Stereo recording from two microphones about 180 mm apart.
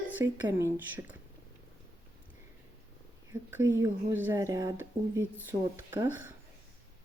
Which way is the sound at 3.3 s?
15° right (ahead or behind).